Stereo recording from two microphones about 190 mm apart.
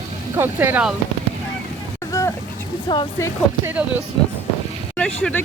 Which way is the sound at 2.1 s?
15° left (ahead or behind).